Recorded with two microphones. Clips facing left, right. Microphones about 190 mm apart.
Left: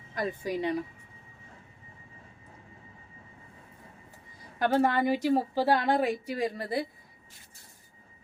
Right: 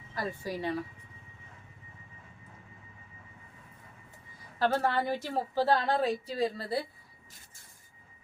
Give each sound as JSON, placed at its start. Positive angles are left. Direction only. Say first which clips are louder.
{"t": 0.1, "sound": "speech", "louder": "left 4 dB", "side_deg": 20}
{"t": 4.6, "sound": "a woman's voice", "louder": "left 3 dB", "side_deg": 15}